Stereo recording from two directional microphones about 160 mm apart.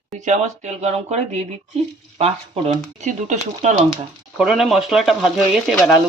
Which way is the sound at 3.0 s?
50° right (ahead or behind).